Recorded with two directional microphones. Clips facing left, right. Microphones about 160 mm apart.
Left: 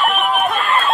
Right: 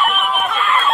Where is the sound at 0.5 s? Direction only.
40° left (ahead or behind).